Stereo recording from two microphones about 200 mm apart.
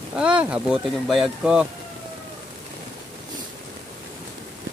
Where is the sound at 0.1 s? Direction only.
5° right (ahead or behind).